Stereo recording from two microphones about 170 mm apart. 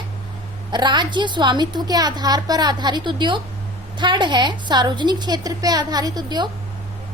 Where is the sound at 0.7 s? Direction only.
25° right (ahead or behind).